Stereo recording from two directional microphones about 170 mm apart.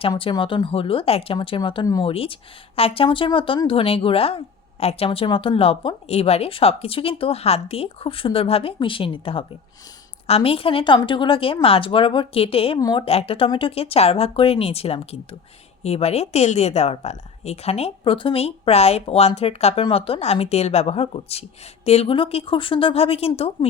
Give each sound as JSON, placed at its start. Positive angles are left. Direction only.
{"t": 0.1, "sound": "speech", "side_deg": 30}